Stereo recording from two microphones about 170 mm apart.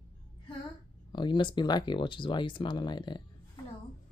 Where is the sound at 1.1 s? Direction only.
25° left (ahead or behind).